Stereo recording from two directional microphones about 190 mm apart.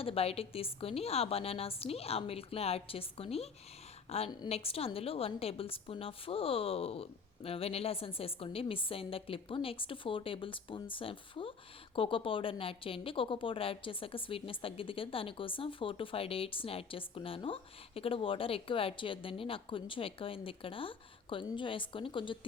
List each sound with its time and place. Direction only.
0.0 s a woman's voice: 30° left (ahead or behind)